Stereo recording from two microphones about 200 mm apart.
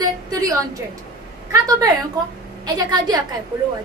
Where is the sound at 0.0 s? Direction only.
20° right (ahead or behind).